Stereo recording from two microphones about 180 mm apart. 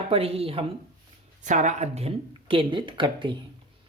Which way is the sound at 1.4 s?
40° right (ahead or behind).